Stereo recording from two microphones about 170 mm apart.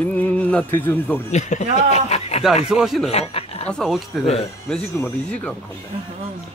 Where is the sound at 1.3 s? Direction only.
45° left (ahead or behind).